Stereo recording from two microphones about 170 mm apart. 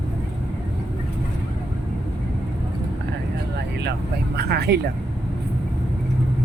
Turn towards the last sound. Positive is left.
turn(degrees=-75)  # may be behind; listen again after turning